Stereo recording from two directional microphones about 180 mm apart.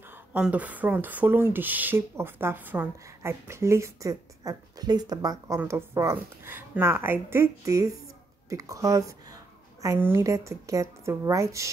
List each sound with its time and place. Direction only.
0.1 s a woman's voice: 10° right (ahead or behind)